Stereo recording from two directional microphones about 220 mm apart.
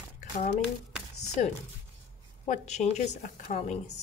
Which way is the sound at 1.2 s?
30° left (ahead or behind).